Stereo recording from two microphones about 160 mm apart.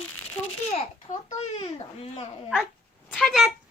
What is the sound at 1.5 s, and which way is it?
Speech, 35° left (ahead or behind).